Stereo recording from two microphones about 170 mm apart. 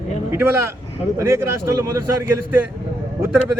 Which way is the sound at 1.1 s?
15° right (ahead or behind).